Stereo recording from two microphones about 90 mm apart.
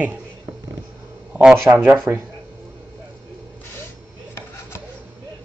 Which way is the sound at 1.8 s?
20° right (ahead or behind).